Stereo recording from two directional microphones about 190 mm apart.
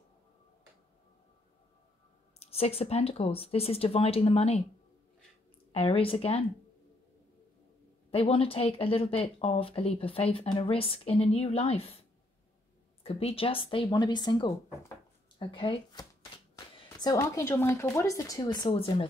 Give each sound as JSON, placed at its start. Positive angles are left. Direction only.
{"t": 2.3, "sound": "speech", "side_deg": 35}
{"t": 5.7, "sound": "speech", "side_deg": 30}
{"t": 8.1, "sound": "speech", "side_deg": 30}
{"t": 13.0, "sound": "speech", "side_deg": 30}